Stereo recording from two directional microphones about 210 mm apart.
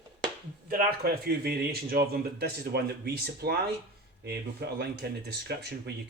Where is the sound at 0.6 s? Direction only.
45° right (ahead or behind).